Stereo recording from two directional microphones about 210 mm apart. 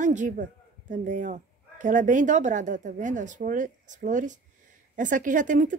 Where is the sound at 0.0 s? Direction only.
35° right (ahead or behind).